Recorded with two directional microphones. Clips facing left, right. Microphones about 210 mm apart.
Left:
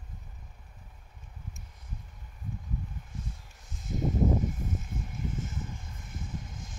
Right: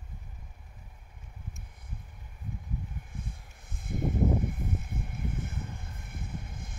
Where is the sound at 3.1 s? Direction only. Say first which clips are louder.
Even; 55° right (ahead or behind).